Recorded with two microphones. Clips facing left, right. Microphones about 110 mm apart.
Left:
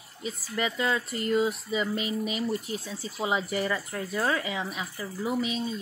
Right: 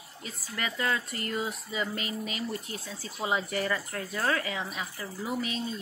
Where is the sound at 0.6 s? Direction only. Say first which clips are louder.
Left 3 dB; 15° left (ahead or behind).